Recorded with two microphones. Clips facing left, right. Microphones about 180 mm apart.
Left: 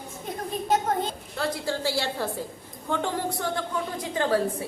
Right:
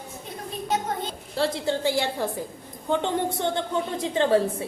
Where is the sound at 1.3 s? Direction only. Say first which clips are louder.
Right 5 dB; 25° right (ahead or behind).